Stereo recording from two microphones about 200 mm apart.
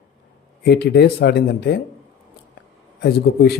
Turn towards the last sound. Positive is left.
turn(degrees=50)  # may be behind; listen again after turning